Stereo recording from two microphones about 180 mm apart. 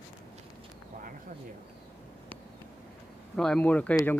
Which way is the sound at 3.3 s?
5° left (ahead or behind).